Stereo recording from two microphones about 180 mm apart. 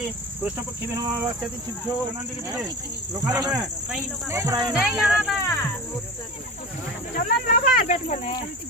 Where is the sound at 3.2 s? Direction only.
20° right (ahead or behind).